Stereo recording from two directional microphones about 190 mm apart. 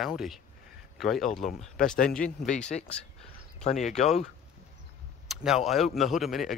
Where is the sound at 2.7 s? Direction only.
45° left (ahead or behind).